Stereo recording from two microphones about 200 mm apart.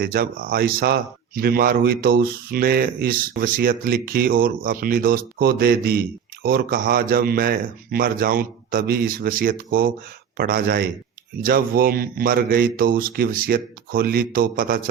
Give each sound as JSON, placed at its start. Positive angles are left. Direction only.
{"t": 0.0, "sound": "speech", "side_deg": -45}